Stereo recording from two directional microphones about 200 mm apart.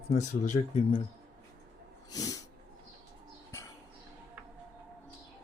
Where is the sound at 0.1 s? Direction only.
35° left (ahead or behind).